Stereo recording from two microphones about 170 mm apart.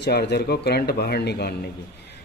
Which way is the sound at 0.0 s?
70° left (ahead or behind).